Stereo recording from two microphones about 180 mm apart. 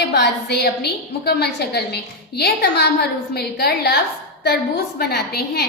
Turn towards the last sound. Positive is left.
turn(degrees=65)  # may be behind; listen again after turning